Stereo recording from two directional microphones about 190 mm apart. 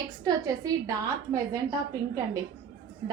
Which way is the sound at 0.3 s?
20° right (ahead or behind).